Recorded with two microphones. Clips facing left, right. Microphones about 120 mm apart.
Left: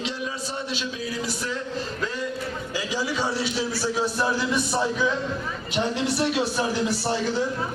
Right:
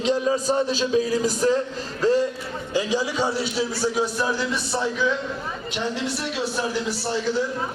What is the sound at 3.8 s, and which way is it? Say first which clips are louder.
Speech: right 2 dB; 15° right (ahead or behind).